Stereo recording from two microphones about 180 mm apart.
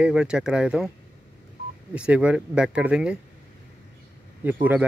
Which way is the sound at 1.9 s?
5° right (ahead or behind).